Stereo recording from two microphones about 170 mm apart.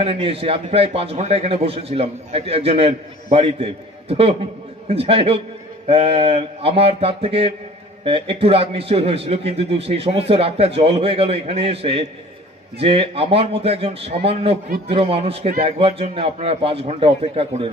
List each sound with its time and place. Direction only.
0.0 s a man's voice: 35° right (ahead or behind)